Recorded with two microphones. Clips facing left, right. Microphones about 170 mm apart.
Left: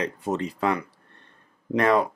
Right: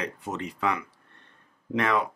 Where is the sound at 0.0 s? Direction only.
35° left (ahead or behind).